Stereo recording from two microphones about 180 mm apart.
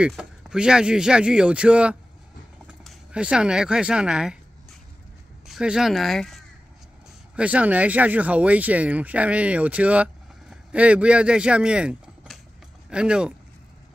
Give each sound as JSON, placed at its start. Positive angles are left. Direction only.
{"t": 0.0, "sound": "speech", "side_deg": -5}
{"t": 2.6, "sound": "a sound", "side_deg": -5}
{"t": 5.5, "sound": "speech", "side_deg": -5}